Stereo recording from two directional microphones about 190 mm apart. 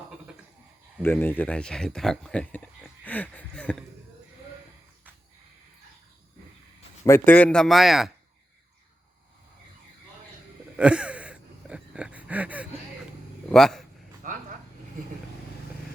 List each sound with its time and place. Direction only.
1.0 s speech: 10° left (ahead or behind)
7.0 s a man's voice: 10° left (ahead or behind)
10.8 s gasp: 5° right (ahead or behind)
13.5 s speech: centre (ahead or behind)
14.2 s a sound: 45° right (ahead or behind)